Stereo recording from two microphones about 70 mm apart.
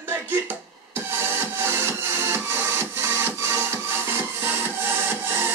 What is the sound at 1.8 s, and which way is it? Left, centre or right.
Music, right.